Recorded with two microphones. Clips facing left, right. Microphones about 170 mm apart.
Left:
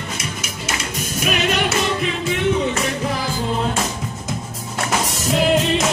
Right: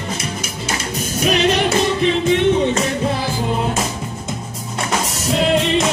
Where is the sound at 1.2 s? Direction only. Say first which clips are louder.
Right 4 dB; 35° right (ahead or behind).